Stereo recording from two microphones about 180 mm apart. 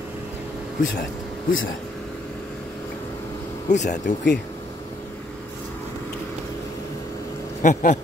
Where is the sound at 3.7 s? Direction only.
40° left (ahead or behind).